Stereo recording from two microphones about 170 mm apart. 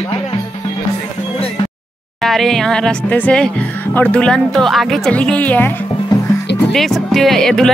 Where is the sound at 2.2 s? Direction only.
Centre (ahead or behind).